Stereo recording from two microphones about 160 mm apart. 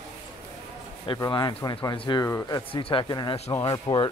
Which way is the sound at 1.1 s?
30° left (ahead or behind).